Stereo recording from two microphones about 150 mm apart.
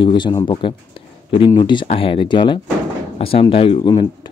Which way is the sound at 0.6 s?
35° left (ahead or behind).